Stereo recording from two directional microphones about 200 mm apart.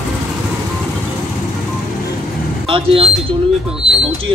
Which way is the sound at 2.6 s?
25° right (ahead or behind).